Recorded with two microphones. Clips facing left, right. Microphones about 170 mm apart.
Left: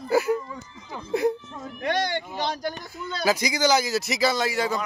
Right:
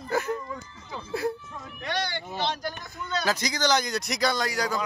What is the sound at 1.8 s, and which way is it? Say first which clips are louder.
Speech: left 5 dB; 45° left (ahead or behind).